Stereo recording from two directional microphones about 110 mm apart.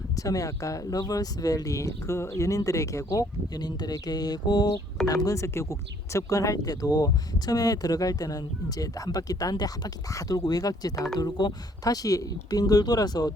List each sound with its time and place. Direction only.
0.2 s speech: 30° left (ahead or behind)